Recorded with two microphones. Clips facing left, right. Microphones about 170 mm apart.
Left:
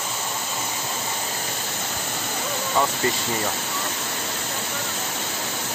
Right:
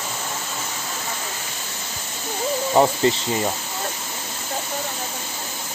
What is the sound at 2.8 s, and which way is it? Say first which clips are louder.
Snake: right 6 dB; 45° right (ahead or behind).